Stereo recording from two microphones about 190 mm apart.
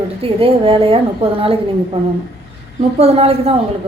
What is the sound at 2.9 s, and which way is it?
Speech, 30° right (ahead or behind).